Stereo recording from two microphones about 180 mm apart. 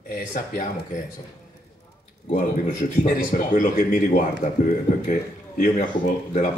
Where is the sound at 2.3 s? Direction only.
50° left (ahead or behind).